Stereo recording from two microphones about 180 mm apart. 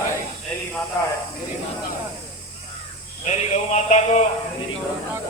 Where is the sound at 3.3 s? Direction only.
40° left (ahead or behind).